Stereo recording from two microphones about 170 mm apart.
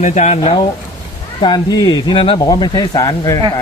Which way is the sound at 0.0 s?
45° left (ahead or behind).